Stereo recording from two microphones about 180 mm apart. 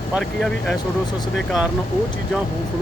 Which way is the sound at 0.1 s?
Centre (ahead or behind).